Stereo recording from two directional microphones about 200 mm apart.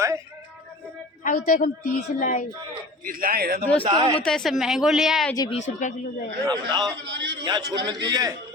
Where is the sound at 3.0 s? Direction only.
45° right (ahead or behind).